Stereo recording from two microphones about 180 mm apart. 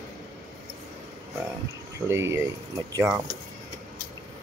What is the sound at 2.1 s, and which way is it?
Speech, 15° right (ahead or behind).